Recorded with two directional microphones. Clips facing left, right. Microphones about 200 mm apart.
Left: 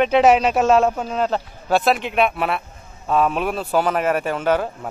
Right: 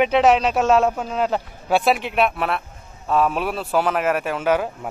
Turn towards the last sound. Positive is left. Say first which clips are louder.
# left 1 dB
turn(degrees=-5)  # may be behind; listen again after turning